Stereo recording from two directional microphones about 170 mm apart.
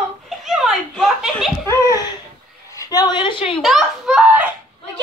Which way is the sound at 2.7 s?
20° left (ahead or behind).